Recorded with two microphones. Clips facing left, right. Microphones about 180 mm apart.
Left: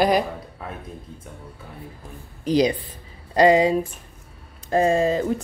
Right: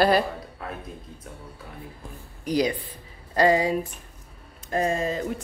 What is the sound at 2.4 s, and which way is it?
Speech, 25° left (ahead or behind).